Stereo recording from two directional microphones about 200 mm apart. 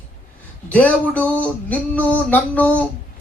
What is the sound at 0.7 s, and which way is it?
Speech, 5° left (ahead or behind).